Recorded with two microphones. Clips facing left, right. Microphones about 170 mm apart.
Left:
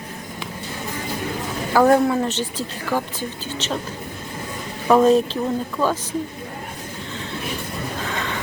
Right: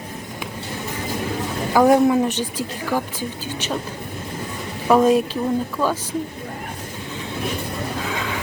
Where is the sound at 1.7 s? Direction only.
15° right (ahead or behind).